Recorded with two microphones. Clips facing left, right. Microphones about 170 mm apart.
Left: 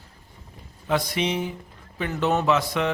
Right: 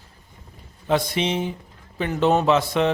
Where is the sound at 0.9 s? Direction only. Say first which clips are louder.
Right 2 dB; 25° right (ahead or behind).